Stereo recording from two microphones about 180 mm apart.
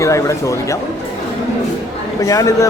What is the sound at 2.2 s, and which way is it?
Speech, 20° left (ahead or behind).